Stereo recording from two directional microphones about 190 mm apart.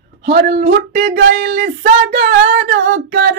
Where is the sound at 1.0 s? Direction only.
70° right (ahead or behind).